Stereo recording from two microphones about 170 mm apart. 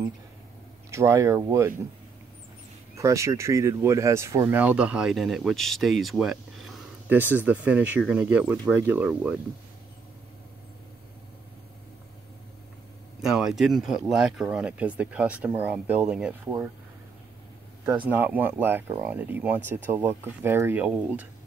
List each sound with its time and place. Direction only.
0.8 s speech: 15° right (ahead or behind)
3.0 s speech: 20° right (ahead or behind)
13.2 s speech: 5° right (ahead or behind)
18.0 s speech: 10° right (ahead or behind)